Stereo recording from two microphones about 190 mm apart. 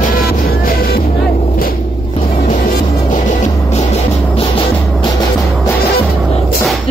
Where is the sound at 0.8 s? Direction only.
50° left (ahead or behind).